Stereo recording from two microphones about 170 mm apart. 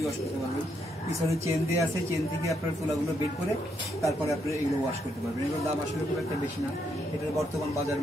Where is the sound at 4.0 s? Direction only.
20° left (ahead or behind).